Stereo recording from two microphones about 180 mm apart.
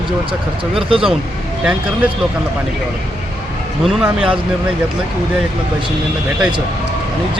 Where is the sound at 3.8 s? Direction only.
Centre (ahead or behind).